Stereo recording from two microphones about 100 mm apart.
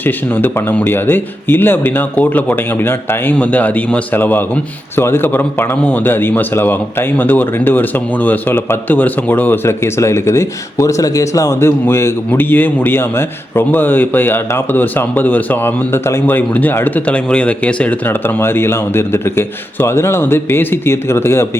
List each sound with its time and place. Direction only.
0.0 s a man's voice: 20° left (ahead or behind)